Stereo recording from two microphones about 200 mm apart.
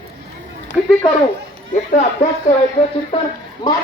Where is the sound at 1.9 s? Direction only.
35° left (ahead or behind).